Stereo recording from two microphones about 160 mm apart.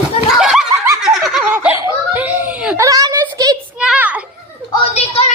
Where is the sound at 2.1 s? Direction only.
10° right (ahead or behind).